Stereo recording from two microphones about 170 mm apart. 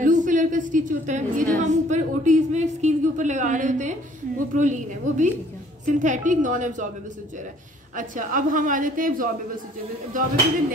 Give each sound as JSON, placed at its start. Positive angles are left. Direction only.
{"t": 0.0, "sound": "a sound", "side_deg": -50}
{"t": 4.6, "sound": "a woman's voice", "side_deg": -45}
{"t": 7.9, "sound": "a woman's voice", "side_deg": -50}